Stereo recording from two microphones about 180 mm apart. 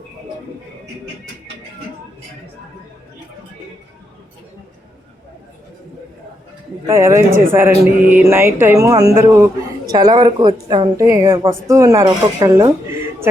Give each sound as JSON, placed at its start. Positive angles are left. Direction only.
{"t": 6.8, "sound": "a woman's voice", "side_deg": -15}